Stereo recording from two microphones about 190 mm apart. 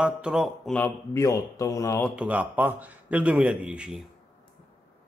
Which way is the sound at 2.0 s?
5° right (ahead or behind).